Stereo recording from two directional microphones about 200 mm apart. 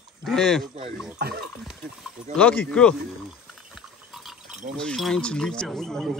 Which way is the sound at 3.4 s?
Centre (ahead or behind).